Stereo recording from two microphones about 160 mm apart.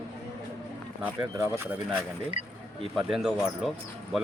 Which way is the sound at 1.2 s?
15° right (ahead or behind).